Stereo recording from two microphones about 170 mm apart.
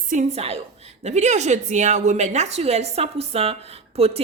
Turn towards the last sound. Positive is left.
turn(degrees=-35)  # may be behind; listen again after turning